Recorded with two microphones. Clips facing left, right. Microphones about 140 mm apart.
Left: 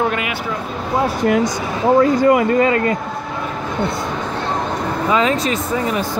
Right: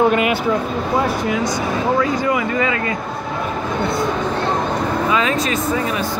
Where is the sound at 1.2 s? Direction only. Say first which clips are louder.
Left 3 dB; 55° left (ahead or behind).